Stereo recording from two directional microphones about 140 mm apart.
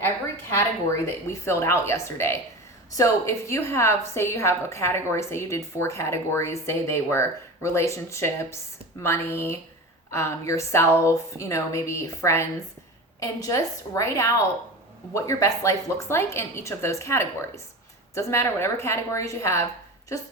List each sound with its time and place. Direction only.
0.5 s a woman's voice: 20° left (ahead or behind)